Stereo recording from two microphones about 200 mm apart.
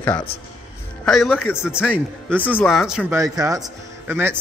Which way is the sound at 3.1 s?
15° right (ahead or behind).